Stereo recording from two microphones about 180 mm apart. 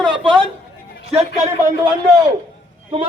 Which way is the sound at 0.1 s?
30° right (ahead or behind).